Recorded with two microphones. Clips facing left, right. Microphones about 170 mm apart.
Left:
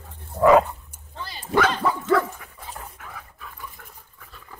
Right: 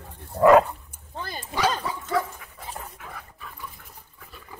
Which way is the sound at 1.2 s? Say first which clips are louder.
Right 2 dB; 50° right (ahead or behind).